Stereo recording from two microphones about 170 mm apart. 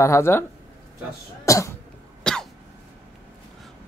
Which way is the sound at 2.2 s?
5° left (ahead or behind).